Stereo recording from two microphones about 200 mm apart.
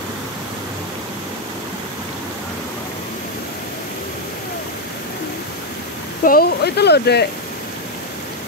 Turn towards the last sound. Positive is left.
turn(degrees=55)  # may be behind; listen again after turning